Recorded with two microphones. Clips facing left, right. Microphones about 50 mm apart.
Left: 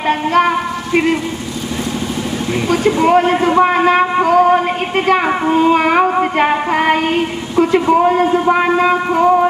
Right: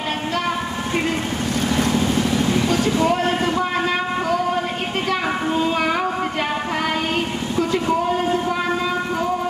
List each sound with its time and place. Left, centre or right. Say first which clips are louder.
2.7 s a sound: left 7 dB; left
7.5 s speech: left 9 dB; left
8.5 s music: left 9 dB; left